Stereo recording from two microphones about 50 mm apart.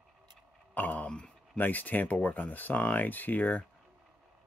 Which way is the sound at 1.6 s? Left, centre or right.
Left.